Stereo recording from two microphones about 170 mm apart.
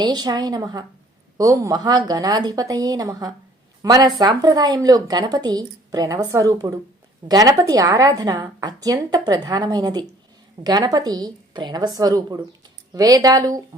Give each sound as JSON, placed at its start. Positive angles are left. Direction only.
{"t": 0.0, "sound": "a woman's voice", "side_deg": -25}